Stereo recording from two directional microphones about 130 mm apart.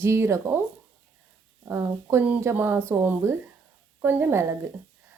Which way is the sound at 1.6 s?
20° right (ahead or behind).